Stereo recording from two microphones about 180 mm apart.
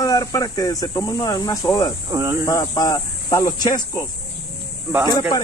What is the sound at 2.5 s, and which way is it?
Speech, 20° left (ahead or behind).